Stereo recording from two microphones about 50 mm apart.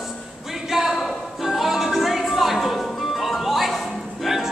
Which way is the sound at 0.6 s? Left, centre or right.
Centre.